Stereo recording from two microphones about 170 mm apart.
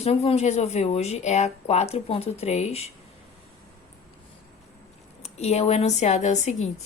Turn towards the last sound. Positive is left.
turn(degrees=40)  # may be behind; listen again after turning